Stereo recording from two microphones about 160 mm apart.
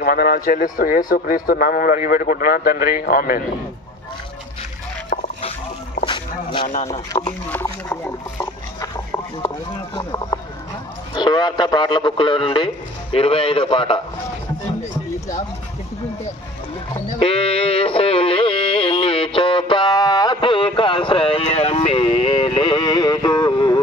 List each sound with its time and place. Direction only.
0.0 s a man's voice: 70° left (ahead or behind)
6.0 s a sound: 30° left (ahead or behind)
6.9 s speech: 25° left (ahead or behind)
7.4 s a sound: 10° left (ahead or behind)
9.9 s a man's voice: 25° left (ahead or behind)
16.9 s sheep: 35° left (ahead or behind)